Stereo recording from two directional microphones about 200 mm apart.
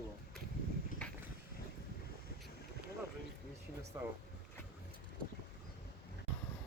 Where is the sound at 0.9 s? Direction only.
40° left (ahead or behind).